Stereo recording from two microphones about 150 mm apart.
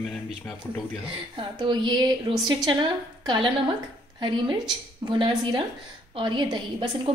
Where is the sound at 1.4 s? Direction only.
30° right (ahead or behind).